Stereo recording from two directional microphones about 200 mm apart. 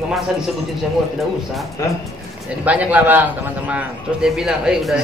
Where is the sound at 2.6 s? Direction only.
5° right (ahead or behind).